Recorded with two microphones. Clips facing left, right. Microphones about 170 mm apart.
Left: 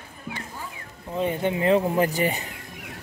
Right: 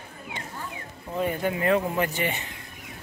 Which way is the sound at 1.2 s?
20° left (ahead or behind).